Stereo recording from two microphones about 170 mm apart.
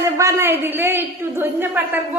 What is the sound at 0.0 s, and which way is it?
A man's voice, 15° right (ahead or behind).